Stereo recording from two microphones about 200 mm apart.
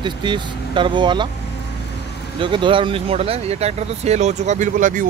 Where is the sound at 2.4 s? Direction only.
25° right (ahead or behind).